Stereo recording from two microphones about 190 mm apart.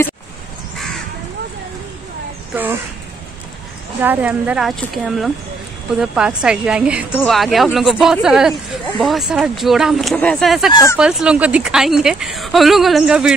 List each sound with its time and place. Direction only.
4.0 s speech: 10° right (ahead or behind)
10.7 s speech: 15° left (ahead or behind)
11.0 s speech: 5° right (ahead or behind)